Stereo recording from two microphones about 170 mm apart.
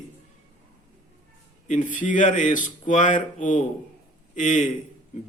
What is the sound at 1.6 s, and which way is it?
Speech, 45° left (ahead or behind).